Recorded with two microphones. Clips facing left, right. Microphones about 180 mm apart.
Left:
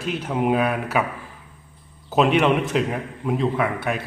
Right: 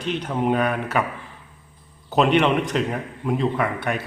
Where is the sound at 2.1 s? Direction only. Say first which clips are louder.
Even; centre (ahead or behind).